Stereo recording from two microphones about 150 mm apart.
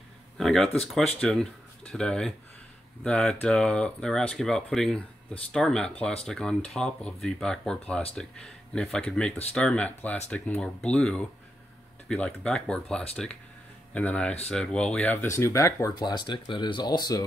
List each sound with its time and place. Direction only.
0.4 s speech: 5° left (ahead or behind); by 17.2 s 25° left (ahead or behind)